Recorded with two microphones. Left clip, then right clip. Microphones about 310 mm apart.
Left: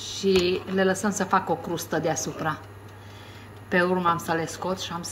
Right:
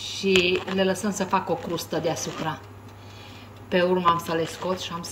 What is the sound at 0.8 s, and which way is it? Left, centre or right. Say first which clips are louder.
A woman's voice: left 1 dB; centre.